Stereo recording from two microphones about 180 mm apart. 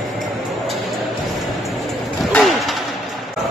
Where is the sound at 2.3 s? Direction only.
Centre (ahead or behind).